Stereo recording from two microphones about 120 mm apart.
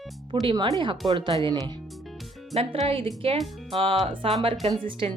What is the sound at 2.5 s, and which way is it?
Speech, 55° right (ahead or behind).